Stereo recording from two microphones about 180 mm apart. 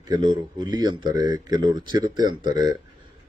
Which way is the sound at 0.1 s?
25° right (ahead or behind).